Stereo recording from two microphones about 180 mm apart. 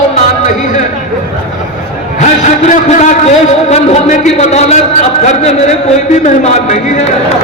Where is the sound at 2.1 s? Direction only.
40° left (ahead or behind).